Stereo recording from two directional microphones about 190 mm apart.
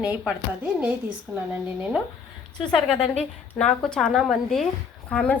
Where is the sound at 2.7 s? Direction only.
5° left (ahead or behind).